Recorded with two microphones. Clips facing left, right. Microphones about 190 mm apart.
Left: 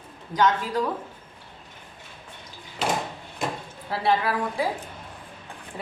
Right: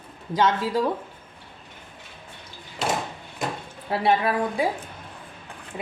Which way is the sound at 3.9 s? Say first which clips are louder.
Right 2 dB; 20° right (ahead or behind).